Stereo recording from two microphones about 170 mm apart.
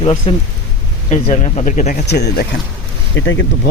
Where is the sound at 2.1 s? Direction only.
75° left (ahead or behind).